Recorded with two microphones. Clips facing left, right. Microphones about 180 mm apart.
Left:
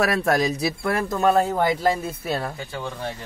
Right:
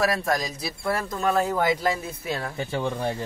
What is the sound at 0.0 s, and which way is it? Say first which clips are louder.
Speech: left 4 dB; 65° left (ahead or behind).